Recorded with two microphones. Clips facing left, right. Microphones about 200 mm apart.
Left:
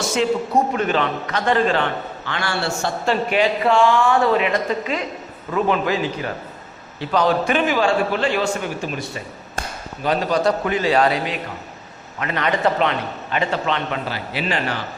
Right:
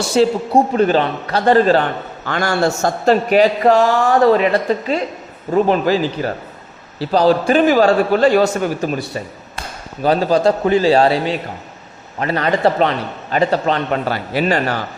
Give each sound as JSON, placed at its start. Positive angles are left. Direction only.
{"t": 0.1, "sound": "a man's voice", "side_deg": -35}